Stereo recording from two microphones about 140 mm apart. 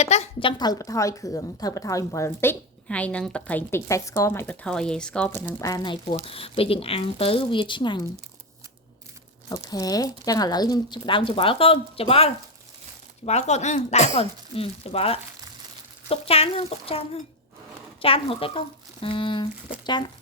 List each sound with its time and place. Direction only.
0.0 s a woman's voice: 50° left (ahead or behind); by 4.5 s 15° left (ahead or behind)
4.6 s speech: 5° left (ahead or behind)
5.5 s a woman's voice: 20° left (ahead or behind)
9.5 s a woman's voice: 25° left (ahead or behind)